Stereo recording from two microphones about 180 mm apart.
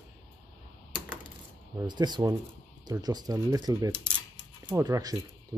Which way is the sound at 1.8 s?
25° right (ahead or behind).